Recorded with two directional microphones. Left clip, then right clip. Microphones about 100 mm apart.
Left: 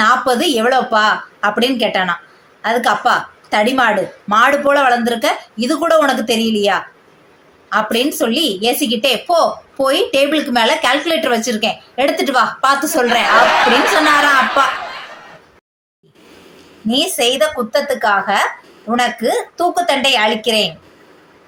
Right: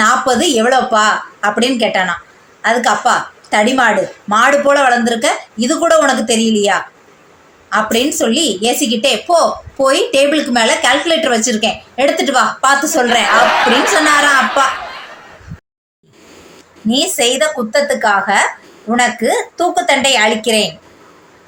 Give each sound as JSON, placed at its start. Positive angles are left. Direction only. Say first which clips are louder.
{"t": 0.0, "sound": "a woman's voice", "louder": "right 1 dB", "side_deg": 5}
{"t": 16.9, "sound": "a woman's voice", "louder": "right 1 dB", "side_deg": 5}